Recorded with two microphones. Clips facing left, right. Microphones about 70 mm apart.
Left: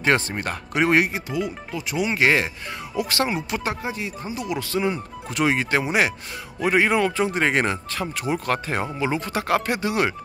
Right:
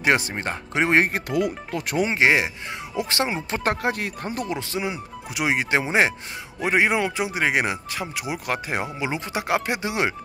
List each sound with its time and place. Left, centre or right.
0.0 s speech: centre
1.0 s speech: right
2.0 s speech: right
3.6 s speech: right
4.5 s speech: right
4.8 s speech: centre